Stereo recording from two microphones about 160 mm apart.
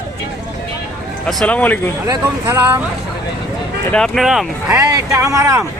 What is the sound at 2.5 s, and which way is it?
Speech, 10° right (ahead or behind).